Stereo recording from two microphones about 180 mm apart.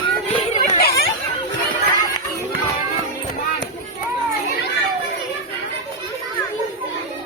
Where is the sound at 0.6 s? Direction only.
55° left (ahead or behind).